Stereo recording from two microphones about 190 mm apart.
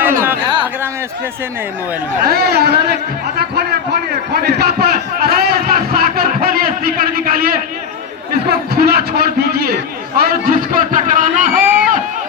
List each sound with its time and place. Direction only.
0.0 s chatter: 10° right (ahead or behind)
2.3 s a man's voice: 55° right (ahead or behind)